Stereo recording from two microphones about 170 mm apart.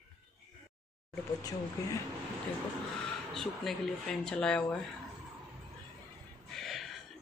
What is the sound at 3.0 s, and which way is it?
Speech, centre (ahead or behind).